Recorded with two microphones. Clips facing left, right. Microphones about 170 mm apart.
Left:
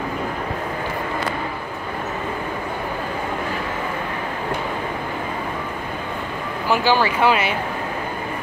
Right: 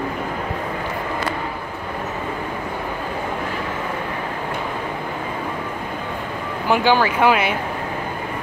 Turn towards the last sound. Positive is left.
turn(degrees=-10)  # may be behind; listen again after turning